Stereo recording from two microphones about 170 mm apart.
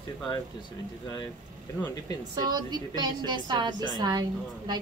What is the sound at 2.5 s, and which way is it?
A woman's voice, 25° right (ahead or behind).